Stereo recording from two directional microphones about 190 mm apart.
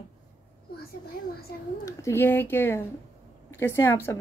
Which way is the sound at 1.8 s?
15° left (ahead or behind).